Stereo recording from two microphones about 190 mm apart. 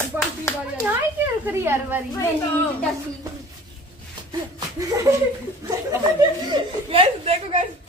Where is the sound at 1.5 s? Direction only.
10° right (ahead or behind).